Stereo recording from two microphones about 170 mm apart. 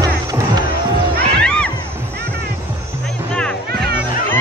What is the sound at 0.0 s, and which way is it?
Music, 20° right (ahead or behind).